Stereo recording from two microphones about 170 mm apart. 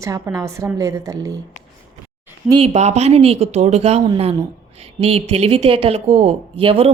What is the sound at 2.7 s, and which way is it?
A woman's voice, 40° right (ahead or behind).